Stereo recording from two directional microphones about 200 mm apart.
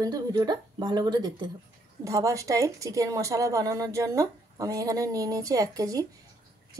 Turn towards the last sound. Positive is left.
turn(degrees=-15)  # may be behind; listen again after turning